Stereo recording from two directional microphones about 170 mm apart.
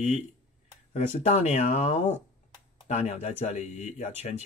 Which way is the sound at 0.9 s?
40° left (ahead or behind).